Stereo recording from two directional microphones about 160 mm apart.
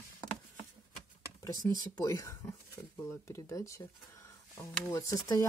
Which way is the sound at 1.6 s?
25° left (ahead or behind).